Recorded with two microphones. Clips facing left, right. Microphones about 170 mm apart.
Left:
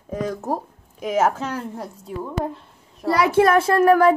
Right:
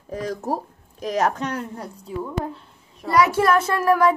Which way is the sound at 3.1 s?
30° left (ahead or behind).